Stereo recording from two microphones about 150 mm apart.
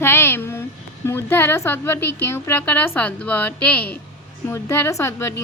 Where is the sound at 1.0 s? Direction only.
15° left (ahead or behind).